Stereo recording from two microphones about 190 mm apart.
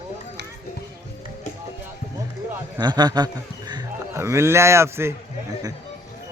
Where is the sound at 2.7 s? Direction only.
20° right (ahead or behind).